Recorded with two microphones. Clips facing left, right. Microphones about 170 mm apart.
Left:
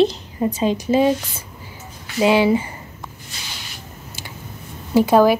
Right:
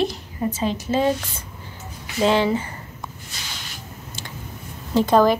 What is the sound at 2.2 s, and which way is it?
Speech, 10° left (ahead or behind).